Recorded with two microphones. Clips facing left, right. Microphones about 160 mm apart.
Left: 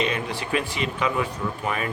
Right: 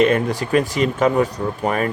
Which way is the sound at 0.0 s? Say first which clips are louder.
Right 10 dB; 45° right (ahead or behind).